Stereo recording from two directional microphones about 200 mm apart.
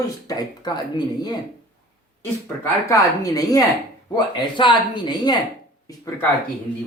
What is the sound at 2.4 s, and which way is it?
Speech, 10° left (ahead or behind).